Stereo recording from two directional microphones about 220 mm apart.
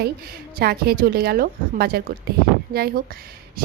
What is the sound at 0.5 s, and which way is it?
A woman's voice, 45° right (ahead or behind).